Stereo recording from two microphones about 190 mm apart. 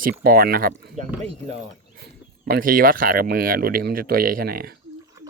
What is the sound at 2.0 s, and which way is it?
Speech, 55° right (ahead or behind).